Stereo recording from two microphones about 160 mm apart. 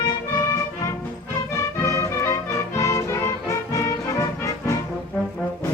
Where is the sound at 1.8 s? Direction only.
20° left (ahead or behind).